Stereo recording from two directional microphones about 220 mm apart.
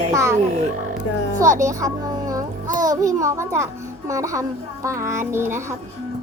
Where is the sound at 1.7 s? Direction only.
15° right (ahead or behind).